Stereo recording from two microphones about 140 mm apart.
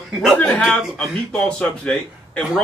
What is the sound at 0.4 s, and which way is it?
A man's voice, 10° left (ahead or behind).